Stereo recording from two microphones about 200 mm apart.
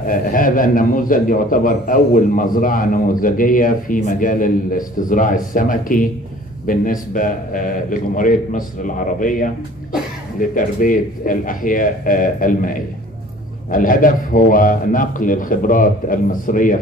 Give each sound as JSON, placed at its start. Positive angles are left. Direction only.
{"t": 0.0, "sound": "a man's voice", "side_deg": 45}
{"t": 10.5, "sound": "a man's voice", "side_deg": 40}